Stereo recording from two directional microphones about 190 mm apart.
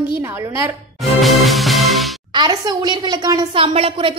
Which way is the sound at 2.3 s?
20° right (ahead or behind).